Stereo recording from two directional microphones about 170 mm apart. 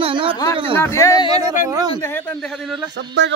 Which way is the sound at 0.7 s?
15° left (ahead or behind).